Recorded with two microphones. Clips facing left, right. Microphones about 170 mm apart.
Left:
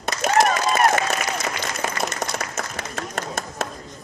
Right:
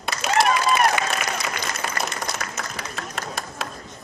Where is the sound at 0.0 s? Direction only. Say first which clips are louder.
Left 2 dB; 45° left (ahead or behind).